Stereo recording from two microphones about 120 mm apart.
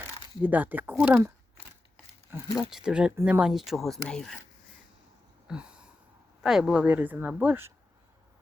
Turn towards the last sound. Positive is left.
turn(degrees=-15)  # may be behind; listen again after turning